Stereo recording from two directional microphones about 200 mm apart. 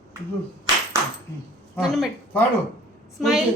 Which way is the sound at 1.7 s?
5° left (ahead or behind).